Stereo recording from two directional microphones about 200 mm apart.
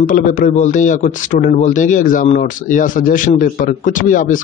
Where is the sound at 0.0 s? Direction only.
40° left (ahead or behind).